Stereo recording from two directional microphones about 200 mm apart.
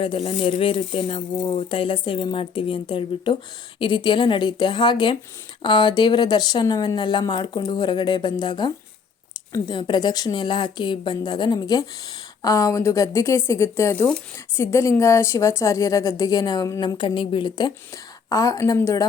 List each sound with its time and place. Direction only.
0.0 s a woman's voice: 25° left (ahead or behind)